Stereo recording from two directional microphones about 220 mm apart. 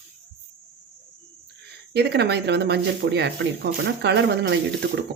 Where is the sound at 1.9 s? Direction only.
50° right (ahead or behind).